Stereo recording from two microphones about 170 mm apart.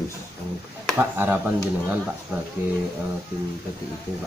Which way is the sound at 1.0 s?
15° right (ahead or behind).